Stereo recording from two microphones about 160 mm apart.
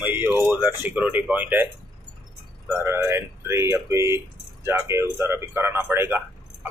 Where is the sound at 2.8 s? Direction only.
15° right (ahead or behind).